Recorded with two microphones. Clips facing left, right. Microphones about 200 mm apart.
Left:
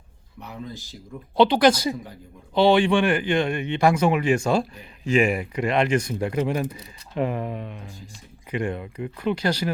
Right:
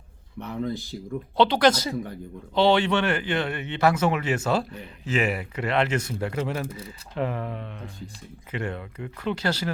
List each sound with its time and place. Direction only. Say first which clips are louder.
0.4 s speech: right 7 dB; 55° right (ahead or behind)
1.4 s speech: left 3 dB; 10° left (ahead or behind)